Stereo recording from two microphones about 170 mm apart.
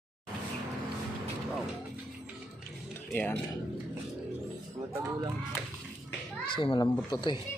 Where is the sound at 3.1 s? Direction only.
10° left (ahead or behind).